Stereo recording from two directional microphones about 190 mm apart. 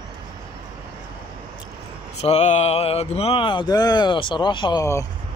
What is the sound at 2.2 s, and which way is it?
Speech, 35° left (ahead or behind).